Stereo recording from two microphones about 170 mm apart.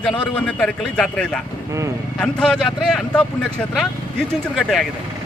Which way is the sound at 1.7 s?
15° right (ahead or behind).